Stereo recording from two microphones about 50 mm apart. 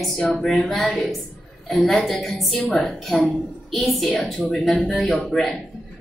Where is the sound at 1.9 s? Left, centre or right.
Centre.